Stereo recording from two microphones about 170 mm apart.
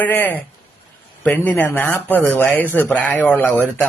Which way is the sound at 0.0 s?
10° left (ahead or behind).